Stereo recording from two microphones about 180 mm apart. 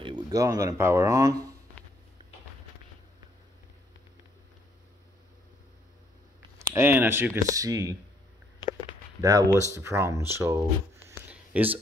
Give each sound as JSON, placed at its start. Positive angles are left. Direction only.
{"t": 0.0, "sound": "speech", "side_deg": -25}
{"t": 6.7, "sound": "speech", "side_deg": -10}
{"t": 9.2, "sound": "speech", "side_deg": -20}
{"t": 11.1, "sound": "a sound", "side_deg": -10}